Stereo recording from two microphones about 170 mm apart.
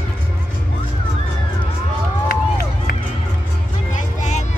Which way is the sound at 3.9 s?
45° left (ahead or behind).